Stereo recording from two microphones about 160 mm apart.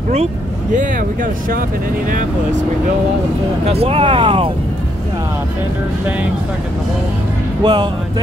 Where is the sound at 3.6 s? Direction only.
40° right (ahead or behind).